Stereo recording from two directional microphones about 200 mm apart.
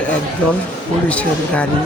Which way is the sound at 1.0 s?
5° left (ahead or behind).